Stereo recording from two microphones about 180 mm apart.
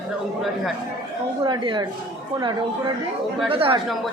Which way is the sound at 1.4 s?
25° right (ahead or behind).